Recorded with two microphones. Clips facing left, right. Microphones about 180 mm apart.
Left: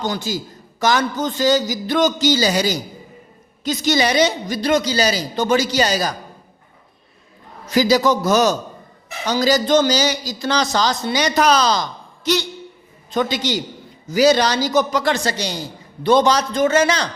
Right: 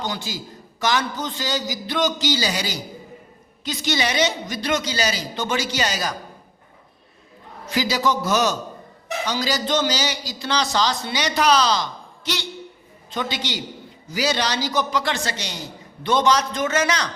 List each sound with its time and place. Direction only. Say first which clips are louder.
0.0 s a man's voice: left 5 dB; 45° left (ahead or behind)
7.7 s a man's voice: left 6 dB; 40° left (ahead or behind)